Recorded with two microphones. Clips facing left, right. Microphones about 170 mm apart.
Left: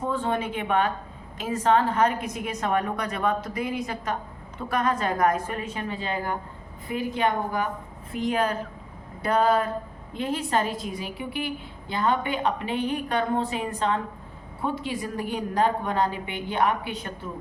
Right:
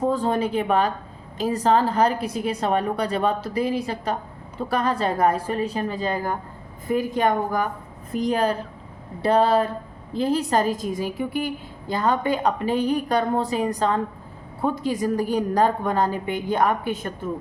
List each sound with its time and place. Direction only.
0.0 s a woman's voice: 35° right (ahead or behind)